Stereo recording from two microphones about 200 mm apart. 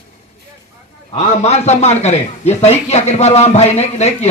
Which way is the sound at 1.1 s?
35° left (ahead or behind).